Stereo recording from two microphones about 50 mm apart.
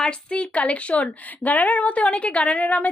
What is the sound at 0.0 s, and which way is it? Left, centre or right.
A woman's voice, centre.